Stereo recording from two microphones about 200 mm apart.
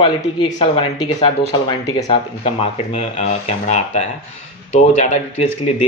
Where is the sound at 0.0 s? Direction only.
25° left (ahead or behind).